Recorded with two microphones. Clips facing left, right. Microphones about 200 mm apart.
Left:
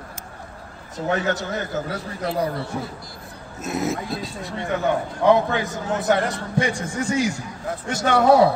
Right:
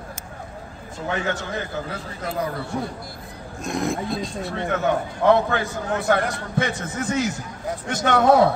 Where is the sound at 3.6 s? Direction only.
5° left (ahead or behind).